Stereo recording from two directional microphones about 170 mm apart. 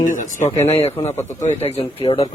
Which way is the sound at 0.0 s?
50° left (ahead or behind).